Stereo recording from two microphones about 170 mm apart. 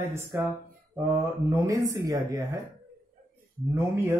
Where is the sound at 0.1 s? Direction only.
15° right (ahead or behind).